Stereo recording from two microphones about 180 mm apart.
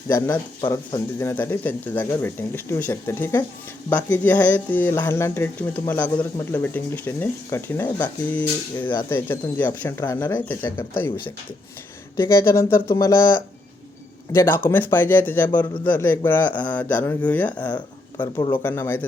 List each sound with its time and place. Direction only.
0.1 s speech: 15° left (ahead or behind)
12.3 s speech: 15° left (ahead or behind)
17.7 s speech: 25° left (ahead or behind)
18.5 s speech: 10° left (ahead or behind)